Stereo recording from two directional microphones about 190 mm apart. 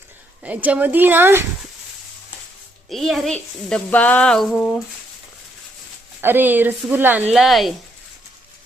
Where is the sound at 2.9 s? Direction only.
Centre (ahead or behind).